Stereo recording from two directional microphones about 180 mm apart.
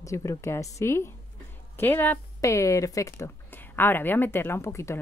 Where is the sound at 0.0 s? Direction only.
15° left (ahead or behind).